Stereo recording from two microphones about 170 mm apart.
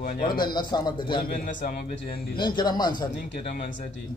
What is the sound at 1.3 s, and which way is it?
Speech, 50° left (ahead or behind).